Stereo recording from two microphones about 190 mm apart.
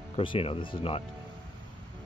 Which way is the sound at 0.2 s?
30° left (ahead or behind).